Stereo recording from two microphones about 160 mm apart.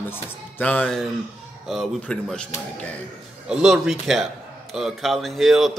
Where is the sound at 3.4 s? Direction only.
5° right (ahead or behind).